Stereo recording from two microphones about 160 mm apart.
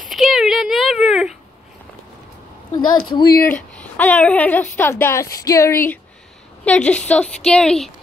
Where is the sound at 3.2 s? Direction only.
75° left (ahead or behind).